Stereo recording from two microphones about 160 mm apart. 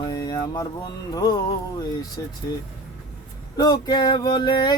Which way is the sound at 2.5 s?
20° left (ahead or behind).